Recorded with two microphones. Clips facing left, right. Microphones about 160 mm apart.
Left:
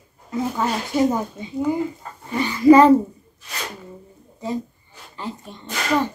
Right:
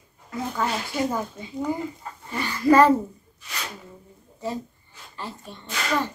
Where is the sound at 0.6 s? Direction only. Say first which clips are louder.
Left 2 dB; 20° left (ahead or behind).